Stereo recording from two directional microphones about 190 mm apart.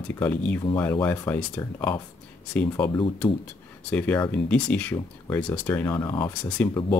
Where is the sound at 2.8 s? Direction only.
25° left (ahead or behind).